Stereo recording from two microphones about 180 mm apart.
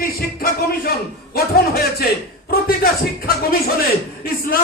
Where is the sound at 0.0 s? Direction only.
55° left (ahead or behind).